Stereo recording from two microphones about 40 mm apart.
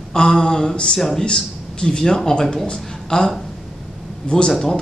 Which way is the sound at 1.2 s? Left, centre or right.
Left.